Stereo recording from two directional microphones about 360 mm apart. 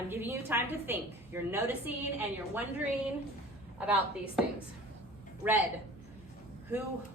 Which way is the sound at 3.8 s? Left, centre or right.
Centre.